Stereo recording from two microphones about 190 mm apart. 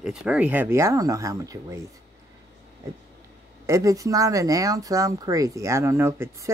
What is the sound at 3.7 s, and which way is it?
Speech, 15° right (ahead or behind).